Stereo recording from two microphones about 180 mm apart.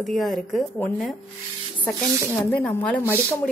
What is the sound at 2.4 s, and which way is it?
Speech, 10° left (ahead or behind).